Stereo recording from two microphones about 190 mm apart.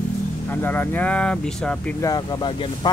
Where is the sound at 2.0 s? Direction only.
20° left (ahead or behind).